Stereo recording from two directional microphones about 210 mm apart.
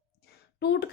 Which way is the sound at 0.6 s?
55° left (ahead or behind).